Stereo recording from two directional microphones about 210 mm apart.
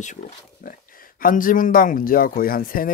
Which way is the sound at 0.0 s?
40° left (ahead or behind).